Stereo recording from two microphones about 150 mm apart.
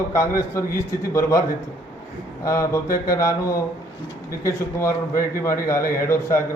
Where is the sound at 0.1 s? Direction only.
20° left (ahead or behind).